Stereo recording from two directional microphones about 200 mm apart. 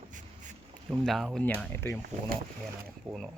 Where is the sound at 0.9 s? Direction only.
Centre (ahead or behind).